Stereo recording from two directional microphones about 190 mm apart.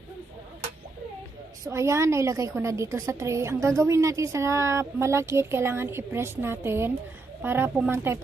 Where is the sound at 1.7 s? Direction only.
15° right (ahead or behind).